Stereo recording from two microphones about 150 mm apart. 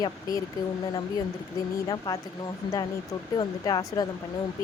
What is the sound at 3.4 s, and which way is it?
Speech, 25° left (ahead or behind).